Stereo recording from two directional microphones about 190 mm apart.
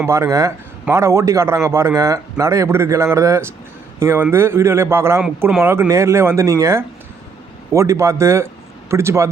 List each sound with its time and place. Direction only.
0.0 s speech: 15° right (ahead or behind)